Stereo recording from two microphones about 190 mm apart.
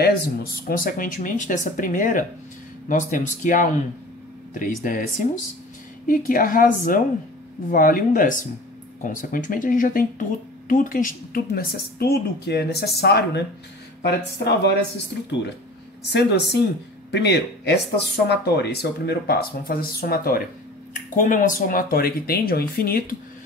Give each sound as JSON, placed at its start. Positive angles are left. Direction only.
{"t": 0.0, "sound": "a woman's voice", "side_deg": 50}
{"t": 16.0, "sound": "a woman's voice", "side_deg": 60}